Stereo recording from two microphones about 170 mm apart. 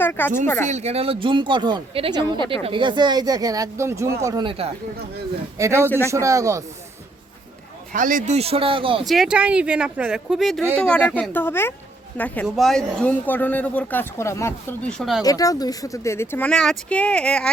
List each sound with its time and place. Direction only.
0.0 s speech: 10° left (ahead or behind)
0.7 s speech: 40° right (ahead or behind)
5.5 s speech: 15° right (ahead or behind)
7.9 s speech: 50° right (ahead or behind)
8.4 s speech: 35° right (ahead or behind)
9.0 s speech: centre (ahead or behind)
15.2 s speech: 20° left (ahead or behind)